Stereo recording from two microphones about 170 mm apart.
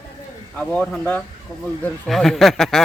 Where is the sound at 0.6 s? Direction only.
5° left (ahead or behind).